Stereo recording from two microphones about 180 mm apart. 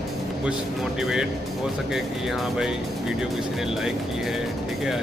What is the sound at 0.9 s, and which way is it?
Speech, 5° right (ahead or behind).